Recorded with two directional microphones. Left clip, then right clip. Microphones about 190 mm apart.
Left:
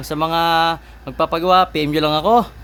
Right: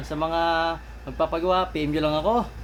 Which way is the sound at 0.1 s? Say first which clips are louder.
Left 7 dB; 60° left (ahead or behind).